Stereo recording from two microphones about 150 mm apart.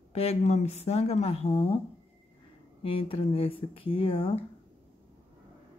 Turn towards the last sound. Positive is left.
turn(degrees=35)  # may be behind; listen again after turning